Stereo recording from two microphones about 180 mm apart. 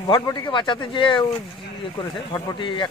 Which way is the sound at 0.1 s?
25° left (ahead or behind).